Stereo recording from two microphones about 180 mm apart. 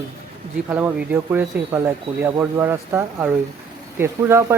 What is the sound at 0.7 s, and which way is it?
Speech, 10° right (ahead or behind).